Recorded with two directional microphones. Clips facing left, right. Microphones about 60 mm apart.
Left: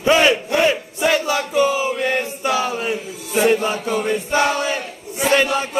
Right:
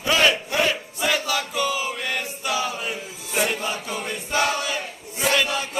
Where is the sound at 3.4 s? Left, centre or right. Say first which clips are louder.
Left 8 dB; left.